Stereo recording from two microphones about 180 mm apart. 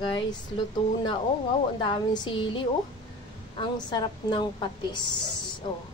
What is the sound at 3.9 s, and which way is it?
Speech, 25° left (ahead or behind).